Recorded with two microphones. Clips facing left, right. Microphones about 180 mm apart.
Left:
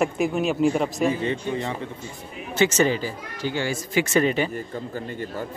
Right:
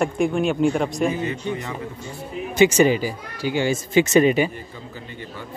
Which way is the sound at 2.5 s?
15° right (ahead or behind).